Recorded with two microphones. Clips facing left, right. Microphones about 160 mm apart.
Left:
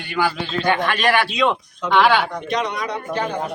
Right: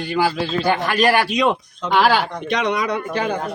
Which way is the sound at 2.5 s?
90° right.